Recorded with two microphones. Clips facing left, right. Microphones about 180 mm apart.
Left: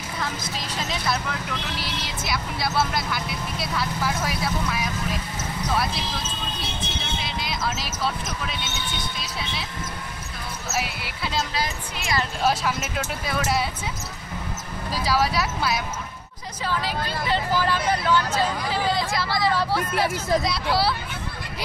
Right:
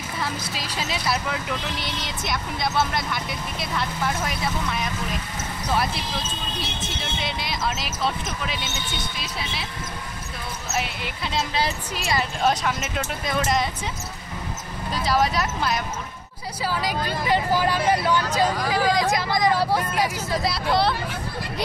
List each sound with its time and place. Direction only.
0.6 s speech: 5° right (ahead or behind)
6.8 s speech: centre (ahead or behind)
10.7 s speech: 5° left (ahead or behind)
11.5 s a woman's voice: 30° right (ahead or behind)
12.4 s speech: 5° left (ahead or behind)
15.0 s speech: 5° left (ahead or behind)
16.6 s speech: 10° right (ahead or behind)
20.4 s speech: centre (ahead or behind)